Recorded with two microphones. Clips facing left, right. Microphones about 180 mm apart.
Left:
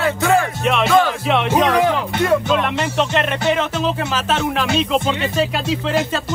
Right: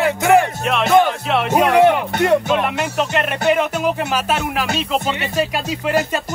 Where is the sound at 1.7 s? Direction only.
25° right (ahead or behind).